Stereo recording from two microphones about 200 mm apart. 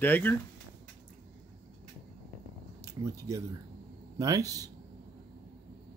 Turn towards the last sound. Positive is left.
turn(degrees=-15)  # may be behind; listen again after turning